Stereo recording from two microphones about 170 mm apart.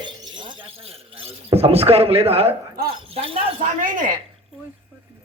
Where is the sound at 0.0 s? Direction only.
30° right (ahead or behind).